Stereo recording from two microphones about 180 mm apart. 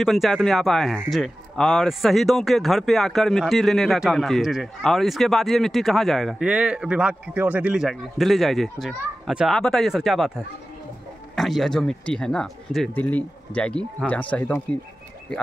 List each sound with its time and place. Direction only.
0.0 s speech: centre (ahead or behind)